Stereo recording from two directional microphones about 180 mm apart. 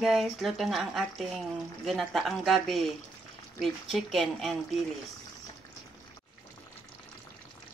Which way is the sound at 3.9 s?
Centre (ahead or behind).